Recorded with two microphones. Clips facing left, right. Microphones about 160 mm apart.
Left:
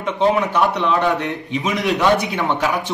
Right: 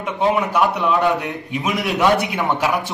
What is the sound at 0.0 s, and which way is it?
A man's voice, centre (ahead or behind).